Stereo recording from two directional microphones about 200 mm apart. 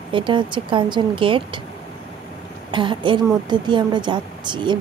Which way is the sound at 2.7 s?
25° right (ahead or behind).